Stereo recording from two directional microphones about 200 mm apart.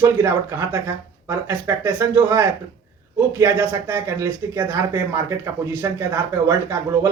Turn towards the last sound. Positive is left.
turn(degrees=-15)  # may be behind; listen again after turning